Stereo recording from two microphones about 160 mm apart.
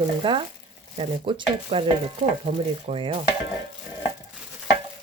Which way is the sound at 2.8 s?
35° right (ahead or behind).